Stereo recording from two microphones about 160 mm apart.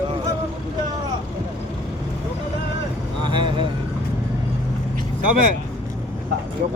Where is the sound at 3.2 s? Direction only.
30° right (ahead or behind).